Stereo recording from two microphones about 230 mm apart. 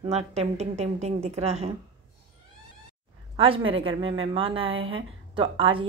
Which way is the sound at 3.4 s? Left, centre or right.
Right.